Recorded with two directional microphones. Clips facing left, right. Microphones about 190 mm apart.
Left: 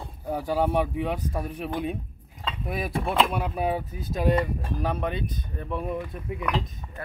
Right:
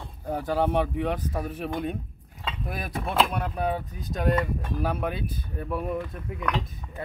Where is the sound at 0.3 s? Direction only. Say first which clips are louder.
Even; 10° left (ahead or behind).